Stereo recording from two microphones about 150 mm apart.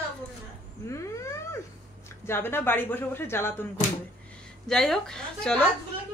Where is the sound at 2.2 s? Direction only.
15° left (ahead or behind).